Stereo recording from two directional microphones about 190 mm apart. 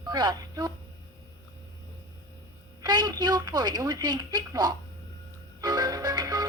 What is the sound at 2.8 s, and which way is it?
A woman's voice, 20° right (ahead or behind).